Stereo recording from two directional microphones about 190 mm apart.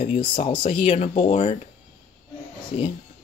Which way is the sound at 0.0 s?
35° left (ahead or behind).